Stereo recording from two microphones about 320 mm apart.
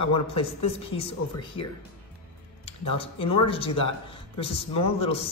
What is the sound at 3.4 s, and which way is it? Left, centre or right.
A man's voice, centre.